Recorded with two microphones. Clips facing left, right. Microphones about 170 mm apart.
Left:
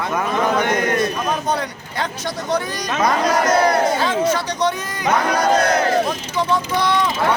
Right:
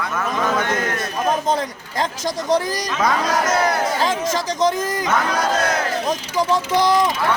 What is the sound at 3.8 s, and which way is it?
Speech, 25° left (ahead or behind).